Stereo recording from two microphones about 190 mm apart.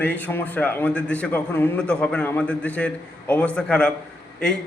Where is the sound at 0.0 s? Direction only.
10° left (ahead or behind).